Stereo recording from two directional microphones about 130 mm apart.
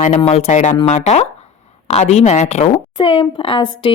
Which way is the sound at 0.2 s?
50° left (ahead or behind).